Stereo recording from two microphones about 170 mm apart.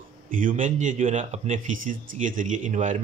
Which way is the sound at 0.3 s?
55° right (ahead or behind).